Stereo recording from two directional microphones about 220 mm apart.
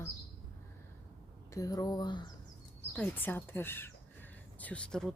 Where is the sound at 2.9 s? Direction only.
5° left (ahead or behind).